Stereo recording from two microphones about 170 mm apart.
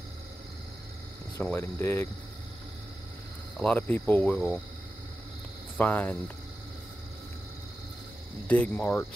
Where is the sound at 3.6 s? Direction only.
10° left (ahead or behind).